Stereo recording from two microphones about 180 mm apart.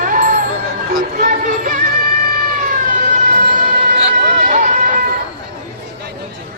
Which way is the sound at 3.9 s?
40° right (ahead or behind).